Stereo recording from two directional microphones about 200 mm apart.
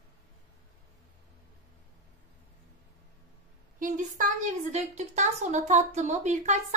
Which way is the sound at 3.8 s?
40° right (ahead or behind).